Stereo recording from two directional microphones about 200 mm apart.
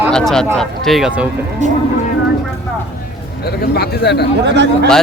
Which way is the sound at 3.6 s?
55° left (ahead or behind).